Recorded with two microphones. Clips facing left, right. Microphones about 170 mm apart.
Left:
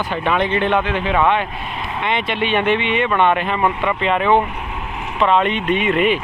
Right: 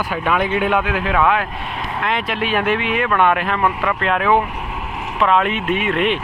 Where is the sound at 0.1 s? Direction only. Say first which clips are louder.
Left 1 dB; 5° right (ahead or behind).